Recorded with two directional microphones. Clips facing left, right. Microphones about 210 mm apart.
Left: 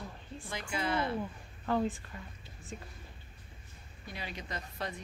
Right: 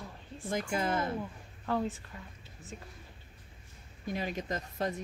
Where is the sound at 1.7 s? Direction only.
Centre (ahead or behind).